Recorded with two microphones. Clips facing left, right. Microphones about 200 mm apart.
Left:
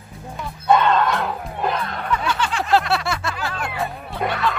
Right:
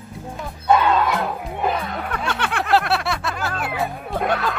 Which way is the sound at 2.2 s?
60° right (ahead or behind).